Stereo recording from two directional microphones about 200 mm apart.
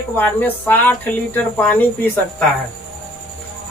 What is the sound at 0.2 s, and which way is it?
Speech, 10° left (ahead or behind).